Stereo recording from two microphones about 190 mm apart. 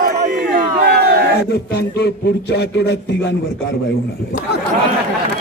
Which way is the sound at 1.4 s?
60° left (ahead or behind).